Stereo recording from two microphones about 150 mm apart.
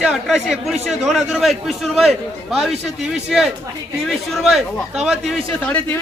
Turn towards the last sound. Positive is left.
turn(degrees=10)  # may be behind; listen again after turning